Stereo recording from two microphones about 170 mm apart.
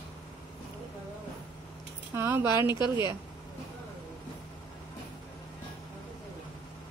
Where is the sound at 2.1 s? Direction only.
15° right (ahead or behind).